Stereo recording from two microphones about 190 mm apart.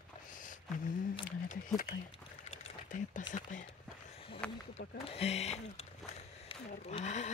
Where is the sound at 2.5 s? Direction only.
40° left (ahead or behind).